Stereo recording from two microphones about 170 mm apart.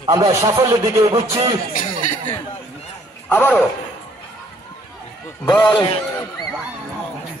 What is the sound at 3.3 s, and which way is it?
Music, 10° left (ahead or behind).